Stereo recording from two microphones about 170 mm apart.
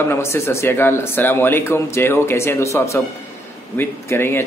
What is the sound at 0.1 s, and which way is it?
A man's voice, 15° left (ahead or behind).